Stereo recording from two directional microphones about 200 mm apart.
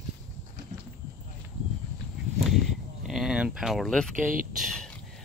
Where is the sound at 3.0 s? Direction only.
Centre (ahead or behind).